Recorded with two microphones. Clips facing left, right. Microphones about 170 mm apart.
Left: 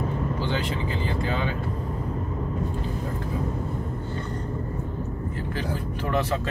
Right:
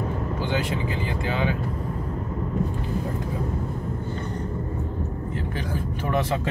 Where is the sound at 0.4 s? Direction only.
15° right (ahead or behind).